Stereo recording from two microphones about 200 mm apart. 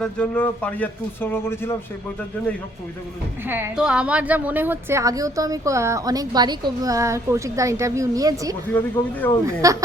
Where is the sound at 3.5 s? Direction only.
10° right (ahead or behind).